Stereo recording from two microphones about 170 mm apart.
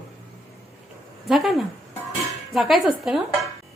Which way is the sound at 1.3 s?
Centre (ahead or behind).